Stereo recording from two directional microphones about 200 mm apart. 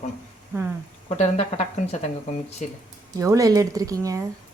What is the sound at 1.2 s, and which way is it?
Speech, 35° left (ahead or behind).